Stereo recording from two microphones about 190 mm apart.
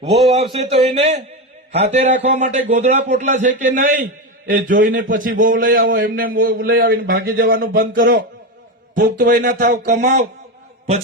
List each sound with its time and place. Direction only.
0.3 s a man's voice: 35° right (ahead or behind)